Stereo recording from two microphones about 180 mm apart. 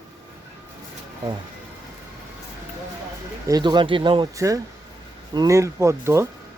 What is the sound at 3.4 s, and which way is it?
Speech, 20° right (ahead or behind).